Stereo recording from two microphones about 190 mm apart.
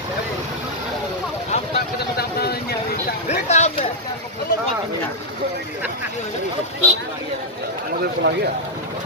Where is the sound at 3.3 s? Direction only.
35° left (ahead or behind).